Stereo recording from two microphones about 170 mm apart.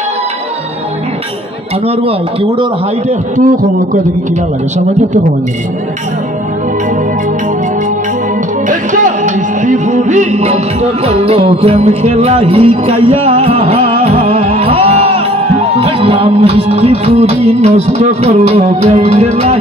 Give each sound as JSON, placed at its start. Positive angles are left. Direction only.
{"t": 1.9, "sound": "music", "side_deg": -30}
{"t": 8.6, "sound": "music", "side_deg": -50}